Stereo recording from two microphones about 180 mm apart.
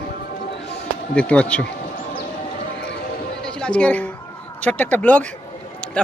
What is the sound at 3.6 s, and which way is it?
A man's voice, 5° left (ahead or behind).